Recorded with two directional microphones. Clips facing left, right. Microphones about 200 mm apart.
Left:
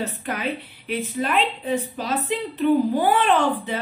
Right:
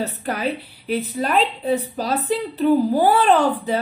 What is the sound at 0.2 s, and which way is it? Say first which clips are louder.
A woman's voice: right 3 dB; 40° right (ahead or behind).